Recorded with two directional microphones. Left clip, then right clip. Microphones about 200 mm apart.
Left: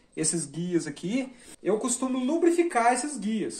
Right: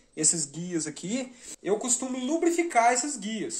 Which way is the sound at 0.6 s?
30° right (ahead or behind).